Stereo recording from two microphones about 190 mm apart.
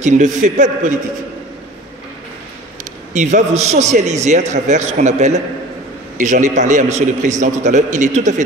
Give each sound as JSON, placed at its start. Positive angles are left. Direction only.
{"t": 0.0, "sound": "a man's voice", "side_deg": -40}
{"t": 3.1, "sound": "a man's voice", "side_deg": -40}